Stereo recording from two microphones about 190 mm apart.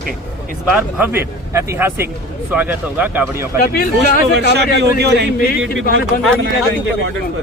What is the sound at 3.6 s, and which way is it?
Speech, 50° left (ahead or behind).